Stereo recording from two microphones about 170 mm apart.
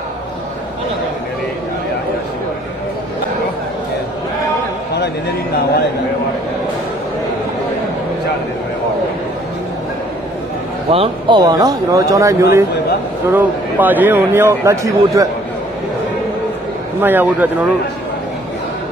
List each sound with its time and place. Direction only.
10.9 s a man's voice: 30° right (ahead or behind)
17.0 s a man's voice: 10° right (ahead or behind)